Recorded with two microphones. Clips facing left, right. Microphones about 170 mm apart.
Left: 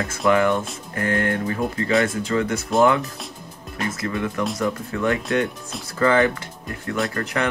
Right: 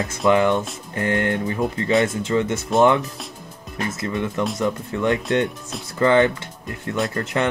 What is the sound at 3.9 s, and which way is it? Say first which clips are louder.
Speech: even; 25° right (ahead or behind).